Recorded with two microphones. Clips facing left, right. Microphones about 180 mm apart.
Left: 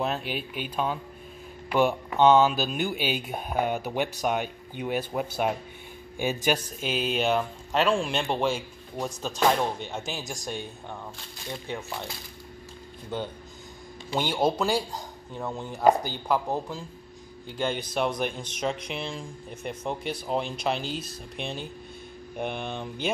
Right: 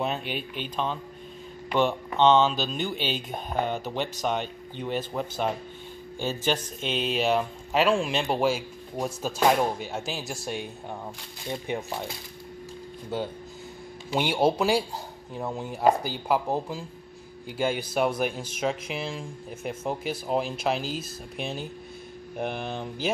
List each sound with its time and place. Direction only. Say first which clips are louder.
0.0 s speech: even; centre (ahead or behind)
11.5 s speech: right 4 dB; 15° right (ahead or behind)
14.1 s speech: right 2 dB; 10° right (ahead or behind)